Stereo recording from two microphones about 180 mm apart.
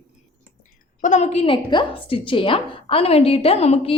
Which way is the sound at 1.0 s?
40° left (ahead or behind).